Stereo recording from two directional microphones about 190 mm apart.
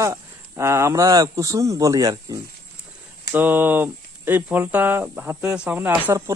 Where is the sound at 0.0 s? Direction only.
15° right (ahead or behind).